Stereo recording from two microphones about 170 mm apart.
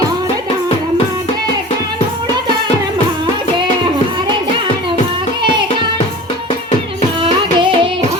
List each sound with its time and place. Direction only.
7.2 s music: 30° right (ahead or behind)